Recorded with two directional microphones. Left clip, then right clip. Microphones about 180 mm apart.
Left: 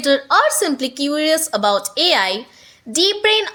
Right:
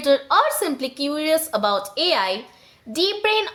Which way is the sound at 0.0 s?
20° left (ahead or behind).